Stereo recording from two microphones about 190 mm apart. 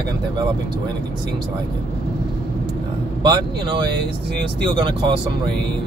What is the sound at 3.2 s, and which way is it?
Speech, 25° right (ahead or behind).